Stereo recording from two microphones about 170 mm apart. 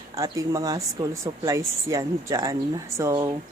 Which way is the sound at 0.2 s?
20° right (ahead or behind).